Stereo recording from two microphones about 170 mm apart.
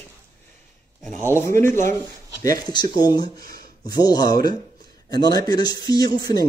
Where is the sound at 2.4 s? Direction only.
20° left (ahead or behind).